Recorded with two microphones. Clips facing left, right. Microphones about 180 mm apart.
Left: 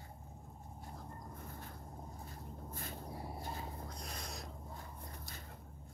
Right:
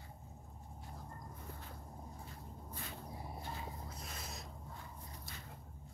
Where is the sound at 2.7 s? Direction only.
45° left (ahead or behind).